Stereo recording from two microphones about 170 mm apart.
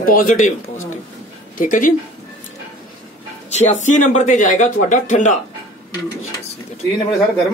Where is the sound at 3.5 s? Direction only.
45° left (ahead or behind).